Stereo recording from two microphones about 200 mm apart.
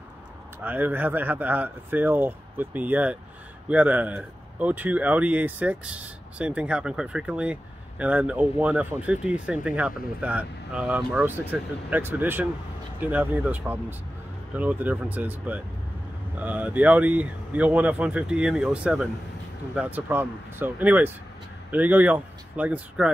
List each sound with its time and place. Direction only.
0.7 s speech: 10° right (ahead or behind)